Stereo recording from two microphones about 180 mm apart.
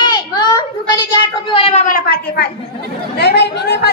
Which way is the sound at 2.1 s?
65° left (ahead or behind).